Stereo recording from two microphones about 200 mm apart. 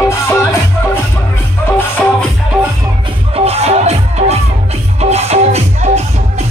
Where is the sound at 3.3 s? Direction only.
30° right (ahead or behind).